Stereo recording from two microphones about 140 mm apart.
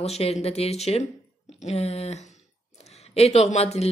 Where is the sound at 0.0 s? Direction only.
50° left (ahead or behind).